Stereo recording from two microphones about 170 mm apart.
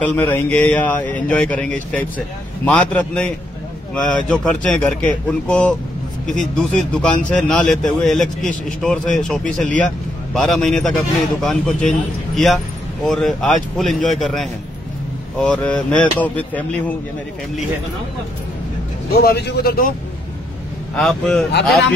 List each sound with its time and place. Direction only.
0.0 s a man's voice: 10° left (ahead or behind)
13.0 s a man's voice: centre (ahead or behind)
19.1 s speech: 70° left (ahead or behind)
20.9 s speech: 5° left (ahead or behind)